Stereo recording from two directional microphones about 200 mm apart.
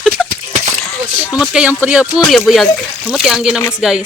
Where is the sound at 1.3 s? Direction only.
5° right (ahead or behind).